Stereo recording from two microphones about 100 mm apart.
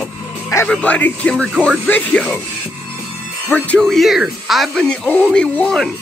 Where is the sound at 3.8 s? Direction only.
Centre (ahead or behind).